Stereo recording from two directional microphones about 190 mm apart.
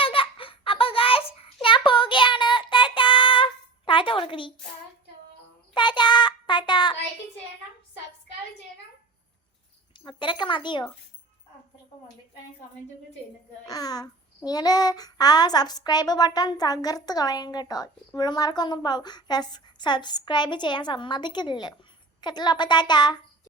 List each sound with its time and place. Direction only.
0.0 s baby laughter: 30° left (ahead or behind)
1.6 s child singing: 25° left (ahead or behind)
5.7 s child singing: 25° left (ahead or behind)
10.0 s child singing: 25° left (ahead or behind)
13.7 s child singing: 20° left (ahead or behind)